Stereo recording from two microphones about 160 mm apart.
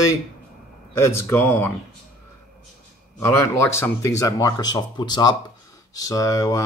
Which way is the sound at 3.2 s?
15° left (ahead or behind).